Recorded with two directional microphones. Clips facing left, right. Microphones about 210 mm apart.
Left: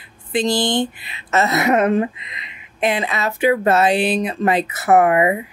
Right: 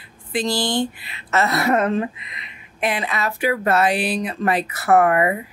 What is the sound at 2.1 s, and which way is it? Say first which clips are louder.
Speech: left 2 dB; 90° left.